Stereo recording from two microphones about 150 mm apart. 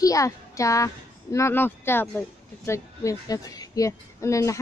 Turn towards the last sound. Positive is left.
turn(degrees=20)  # may be behind; listen again after turning